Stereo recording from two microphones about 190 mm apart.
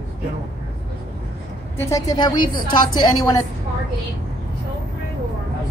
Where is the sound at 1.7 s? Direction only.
15° left (ahead or behind).